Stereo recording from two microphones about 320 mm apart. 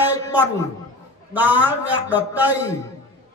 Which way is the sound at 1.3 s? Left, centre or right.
Centre.